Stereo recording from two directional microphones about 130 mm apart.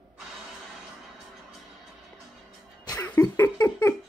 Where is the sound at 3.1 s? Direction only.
20° left (ahead or behind).